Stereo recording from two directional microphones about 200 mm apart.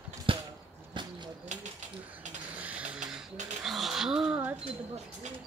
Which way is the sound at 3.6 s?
Centre (ahead or behind).